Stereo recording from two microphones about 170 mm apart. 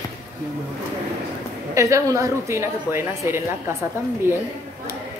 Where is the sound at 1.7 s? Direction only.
15° right (ahead or behind).